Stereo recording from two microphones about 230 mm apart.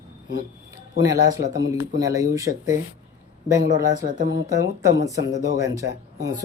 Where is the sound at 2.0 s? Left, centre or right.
Centre.